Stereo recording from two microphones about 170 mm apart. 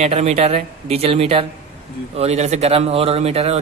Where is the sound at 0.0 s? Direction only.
40° right (ahead or behind).